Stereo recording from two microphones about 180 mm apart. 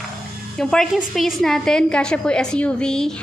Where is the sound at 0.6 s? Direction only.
5° left (ahead or behind).